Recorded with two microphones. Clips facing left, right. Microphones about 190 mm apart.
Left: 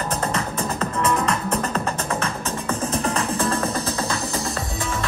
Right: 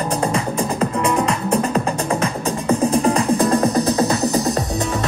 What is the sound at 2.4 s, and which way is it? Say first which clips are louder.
Music: right 8 dB; 35° right (ahead or behind).